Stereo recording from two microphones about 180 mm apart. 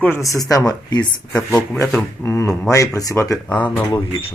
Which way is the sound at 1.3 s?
5° left (ahead or behind).